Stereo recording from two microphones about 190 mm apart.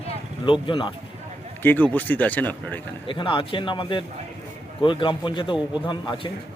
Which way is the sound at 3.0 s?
25° left (ahead or behind).